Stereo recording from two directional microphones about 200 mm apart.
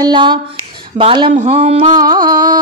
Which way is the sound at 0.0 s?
25° right (ahead or behind).